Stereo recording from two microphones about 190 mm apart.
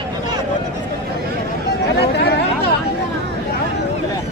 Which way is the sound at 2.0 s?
60° left (ahead or behind).